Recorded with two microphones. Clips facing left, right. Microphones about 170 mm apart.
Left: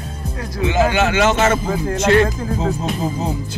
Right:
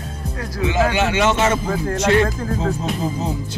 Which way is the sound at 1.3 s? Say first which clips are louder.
Left 2 dB; centre (ahead or behind).